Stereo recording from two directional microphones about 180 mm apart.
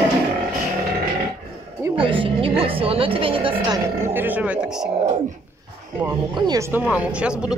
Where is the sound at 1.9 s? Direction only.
30° right (ahead or behind).